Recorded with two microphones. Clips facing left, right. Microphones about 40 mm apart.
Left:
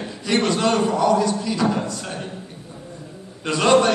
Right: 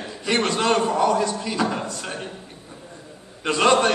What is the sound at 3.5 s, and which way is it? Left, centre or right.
Speech, centre.